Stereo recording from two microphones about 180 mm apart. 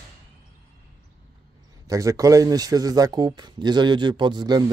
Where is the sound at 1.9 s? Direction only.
20° right (ahead or behind).